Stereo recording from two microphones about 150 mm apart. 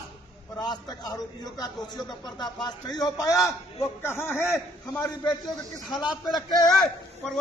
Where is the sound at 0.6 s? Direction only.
30° left (ahead or behind).